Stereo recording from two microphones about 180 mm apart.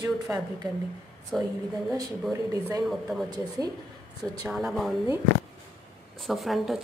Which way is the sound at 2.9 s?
Centre (ahead or behind).